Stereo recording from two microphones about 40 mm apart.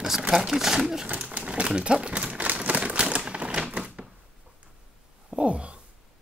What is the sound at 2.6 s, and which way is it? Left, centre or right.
Typewriter, right.